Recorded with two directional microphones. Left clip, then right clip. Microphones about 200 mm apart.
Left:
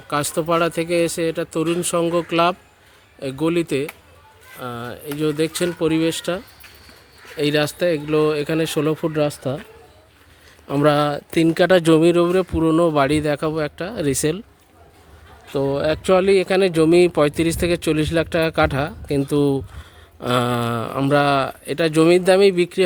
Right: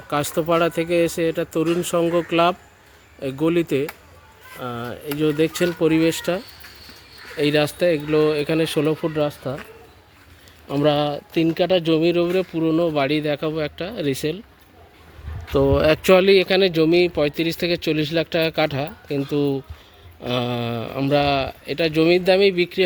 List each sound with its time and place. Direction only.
0.1 s speech: centre (ahead or behind)
7.3 s speech: 5° left (ahead or behind); by 9.6 s 30° left (ahead or behind)
10.7 s speech: 20° left (ahead or behind)
15.4 s speech: 10° right (ahead or behind)
16.2 s speech: centre (ahead or behind)